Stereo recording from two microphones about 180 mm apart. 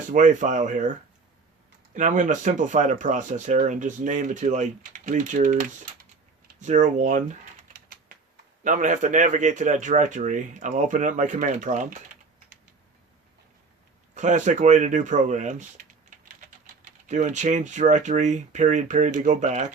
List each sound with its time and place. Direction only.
0.1 s speech: 45° right (ahead or behind)
2.0 s speech: 45° right (ahead or behind)
8.6 s speech: 45° right (ahead or behind)
14.2 s speech: 45° right (ahead or behind)
16.6 s speech: 40° right (ahead or behind)